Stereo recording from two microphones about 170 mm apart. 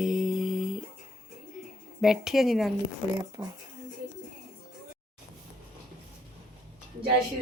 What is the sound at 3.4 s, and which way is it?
Speech, 20° right (ahead or behind).